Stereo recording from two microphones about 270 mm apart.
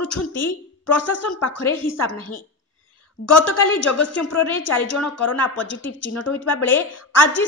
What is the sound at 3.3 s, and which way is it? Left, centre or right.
Speech, left.